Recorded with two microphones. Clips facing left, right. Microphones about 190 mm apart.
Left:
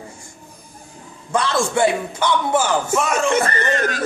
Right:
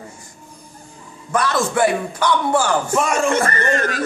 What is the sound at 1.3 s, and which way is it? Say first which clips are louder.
Speech: even; 25° left (ahead or behind).